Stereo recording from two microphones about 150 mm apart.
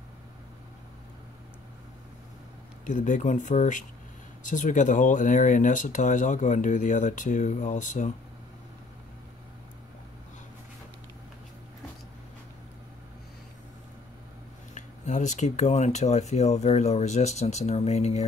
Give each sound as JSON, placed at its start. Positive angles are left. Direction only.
{"t": 2.8, "sound": "speech", "side_deg": 60}
{"t": 14.7, "sound": "speech", "side_deg": 55}